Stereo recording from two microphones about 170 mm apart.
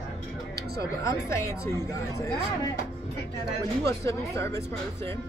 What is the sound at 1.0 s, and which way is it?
Speech, 15° left (ahead or behind).